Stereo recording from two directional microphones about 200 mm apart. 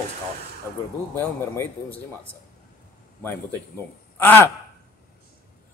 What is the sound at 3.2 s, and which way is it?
A man's voice, 10° left (ahead or behind).